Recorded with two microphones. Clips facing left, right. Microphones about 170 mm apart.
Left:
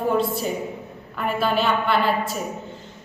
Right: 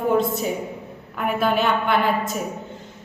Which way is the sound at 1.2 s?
15° right (ahead or behind).